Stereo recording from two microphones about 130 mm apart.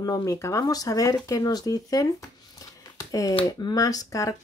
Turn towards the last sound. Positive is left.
turn(degrees=25)  # may be behind; listen again after turning